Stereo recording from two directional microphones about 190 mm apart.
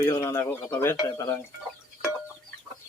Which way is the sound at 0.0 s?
20° left (ahead or behind).